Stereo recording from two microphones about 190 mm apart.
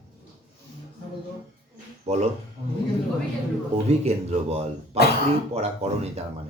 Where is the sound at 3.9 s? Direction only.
35° right (ahead or behind).